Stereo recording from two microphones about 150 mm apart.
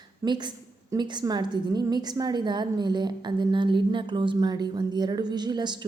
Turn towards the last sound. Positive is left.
turn(degrees=-30)  # may be behind; listen again after turning